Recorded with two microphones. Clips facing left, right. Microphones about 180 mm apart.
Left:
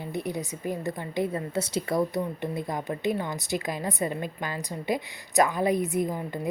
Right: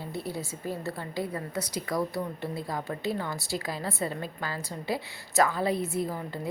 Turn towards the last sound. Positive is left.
turn(degrees=15)  # may be behind; listen again after turning